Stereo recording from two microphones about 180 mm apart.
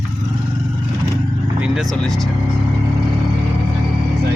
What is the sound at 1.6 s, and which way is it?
Vehicle, centre (ahead or behind).